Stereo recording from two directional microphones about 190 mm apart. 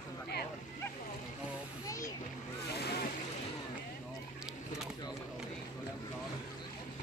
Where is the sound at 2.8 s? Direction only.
55° left (ahead or behind).